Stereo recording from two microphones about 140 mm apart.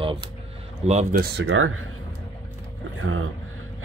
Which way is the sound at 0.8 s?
50° right (ahead or behind).